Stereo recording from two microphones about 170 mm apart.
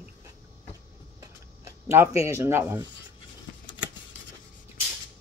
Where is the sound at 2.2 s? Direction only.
15° right (ahead or behind).